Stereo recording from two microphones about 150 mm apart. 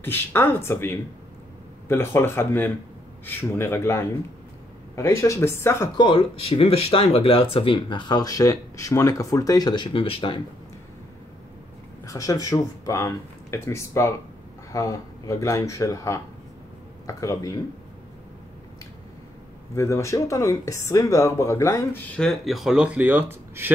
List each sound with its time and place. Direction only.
0.0 s speech: 15° left (ahead or behind); by 10.4 s 35° left (ahead or behind)
12.1 s speech: 20° left (ahead or behind)
19.7 s speech: 20° left (ahead or behind)
22.1 s speech: 5° left (ahead or behind); by 23.7 s 15° right (ahead or behind)